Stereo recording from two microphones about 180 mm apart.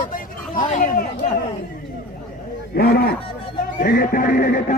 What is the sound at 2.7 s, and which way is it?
Speech, 60° left (ahead or behind).